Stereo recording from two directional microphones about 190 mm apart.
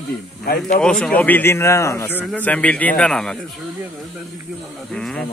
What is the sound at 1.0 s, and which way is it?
A man's voice, 10° left (ahead or behind).